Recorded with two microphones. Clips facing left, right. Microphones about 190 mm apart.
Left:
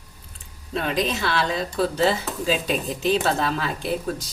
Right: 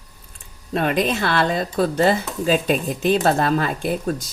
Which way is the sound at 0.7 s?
55° right (ahead or behind).